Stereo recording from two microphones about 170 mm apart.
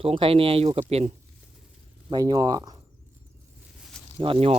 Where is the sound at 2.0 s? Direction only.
25° right (ahead or behind).